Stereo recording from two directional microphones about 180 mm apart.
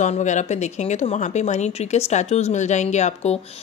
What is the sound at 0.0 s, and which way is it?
A woman's voice, 40° left (ahead or behind).